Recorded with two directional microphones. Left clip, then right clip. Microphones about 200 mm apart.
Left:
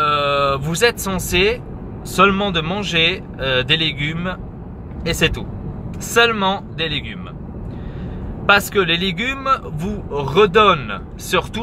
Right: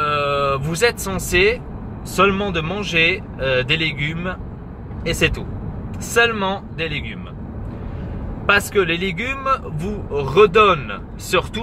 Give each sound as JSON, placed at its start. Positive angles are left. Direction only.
{"t": 0.0, "sound": "a sound", "side_deg": 20}
{"t": 2.1, "sound": "speech", "side_deg": 20}
{"t": 8.5, "sound": "speech", "side_deg": 20}